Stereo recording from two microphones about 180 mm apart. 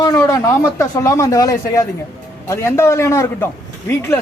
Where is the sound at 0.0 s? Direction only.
20° left (ahead or behind).